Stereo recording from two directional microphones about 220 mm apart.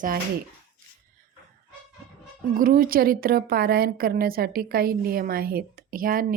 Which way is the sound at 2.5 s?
40° right (ahead or behind).